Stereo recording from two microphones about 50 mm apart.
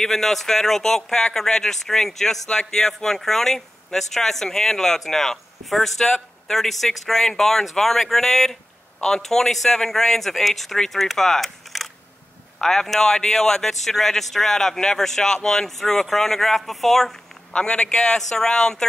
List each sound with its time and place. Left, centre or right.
0.0 s speech: centre
17.6 s a man's voice: centre